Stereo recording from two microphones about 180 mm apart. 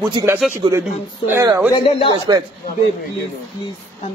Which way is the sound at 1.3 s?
15° right (ahead or behind).